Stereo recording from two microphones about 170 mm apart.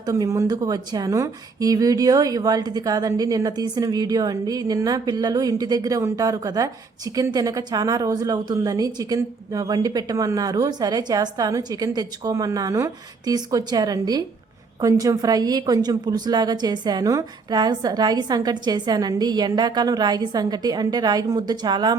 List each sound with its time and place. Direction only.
0.0 s speech: 20° right (ahead or behind)